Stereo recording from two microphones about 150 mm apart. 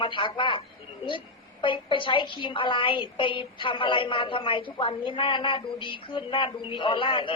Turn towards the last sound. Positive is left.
turn(degrees=35)  # may be behind; listen again after turning